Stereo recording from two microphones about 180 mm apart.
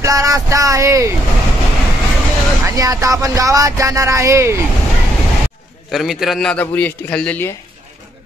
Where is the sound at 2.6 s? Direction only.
20° right (ahead or behind).